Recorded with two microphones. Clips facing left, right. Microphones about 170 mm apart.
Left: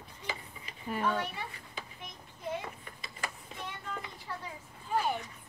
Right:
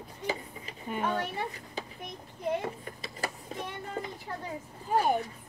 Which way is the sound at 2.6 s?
35° right (ahead or behind).